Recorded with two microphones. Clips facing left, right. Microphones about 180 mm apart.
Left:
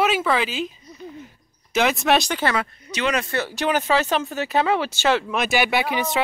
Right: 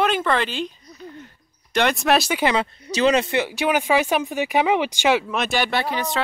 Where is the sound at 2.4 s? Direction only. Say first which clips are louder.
Right 3 dB; 20° right (ahead or behind).